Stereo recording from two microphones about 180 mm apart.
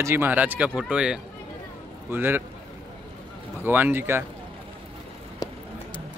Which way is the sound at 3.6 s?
10° right (ahead or behind).